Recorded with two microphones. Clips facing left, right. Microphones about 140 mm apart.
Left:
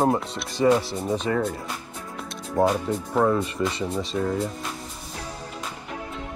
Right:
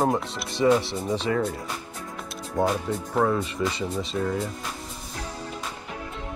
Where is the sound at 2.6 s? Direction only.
30° left (ahead or behind).